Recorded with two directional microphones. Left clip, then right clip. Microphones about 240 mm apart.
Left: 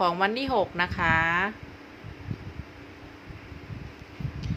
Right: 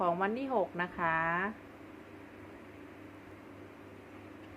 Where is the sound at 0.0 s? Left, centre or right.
Left.